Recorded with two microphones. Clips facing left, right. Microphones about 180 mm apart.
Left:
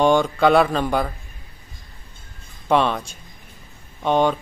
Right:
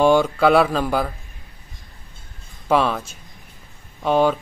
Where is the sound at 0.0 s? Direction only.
5° right (ahead or behind).